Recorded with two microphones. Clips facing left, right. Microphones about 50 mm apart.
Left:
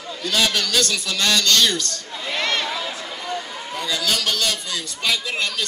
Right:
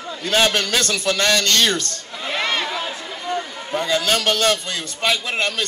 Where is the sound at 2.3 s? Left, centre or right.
Centre.